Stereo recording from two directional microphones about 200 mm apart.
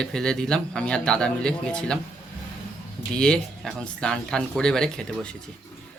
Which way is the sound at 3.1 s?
5° left (ahead or behind).